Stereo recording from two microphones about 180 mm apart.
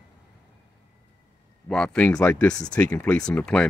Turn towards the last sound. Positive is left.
turn(degrees=5)  # may be behind; listen again after turning